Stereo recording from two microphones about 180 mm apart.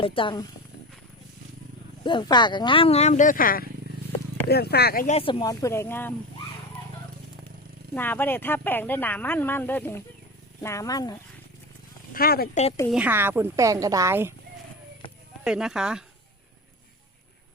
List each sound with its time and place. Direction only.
0.0 s speech: 30° left (ahead or behind)
2.0 s speech: 25° left (ahead or behind); by 3.7 s 50° left (ahead or behind)
4.4 s speech: 60° left (ahead or behind)
5.0 s speech: 30° left (ahead or behind); by 6.1 s 10° left (ahead or behind)
7.9 s speech: 10° left (ahead or behind)
12.1 s speech: 55° left (ahead or behind)
12.9 s a woman's voice: 10° right (ahead or behind)
15.4 s speech: 5° right (ahead or behind)